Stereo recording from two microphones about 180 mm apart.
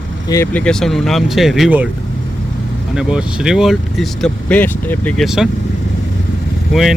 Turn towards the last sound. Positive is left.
turn(degrees=0)  # may be behind; listen again after turning